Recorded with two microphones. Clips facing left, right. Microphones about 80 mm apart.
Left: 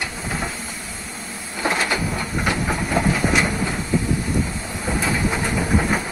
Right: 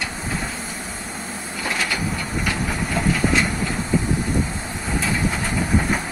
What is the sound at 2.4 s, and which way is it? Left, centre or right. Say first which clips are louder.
Steam: left 3 dB; centre.